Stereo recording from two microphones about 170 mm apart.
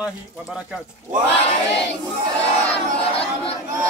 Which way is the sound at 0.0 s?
5° right (ahead or behind).